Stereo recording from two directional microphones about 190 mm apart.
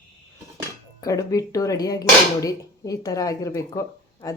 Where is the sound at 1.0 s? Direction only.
20° left (ahead or behind).